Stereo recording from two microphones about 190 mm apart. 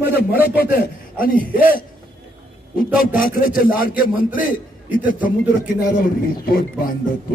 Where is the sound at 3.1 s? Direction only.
45° left (ahead or behind).